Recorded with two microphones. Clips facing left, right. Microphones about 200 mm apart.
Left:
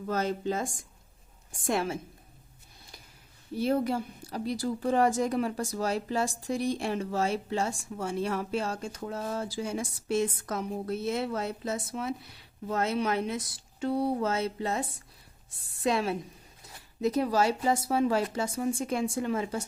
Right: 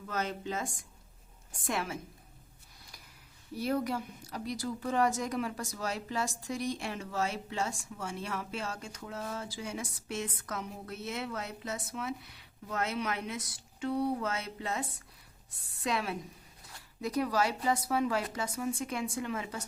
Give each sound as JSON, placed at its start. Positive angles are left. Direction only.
{"t": 0.0, "sound": "speech", "side_deg": 35}
{"t": 3.5, "sound": "a woman's voice", "side_deg": 30}